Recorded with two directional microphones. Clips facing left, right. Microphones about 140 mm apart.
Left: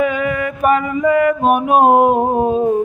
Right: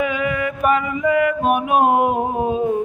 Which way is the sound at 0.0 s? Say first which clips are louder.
Left 3 dB; 45° left (ahead or behind).